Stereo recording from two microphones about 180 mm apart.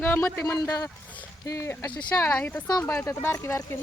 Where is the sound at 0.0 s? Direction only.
15° left (ahead or behind).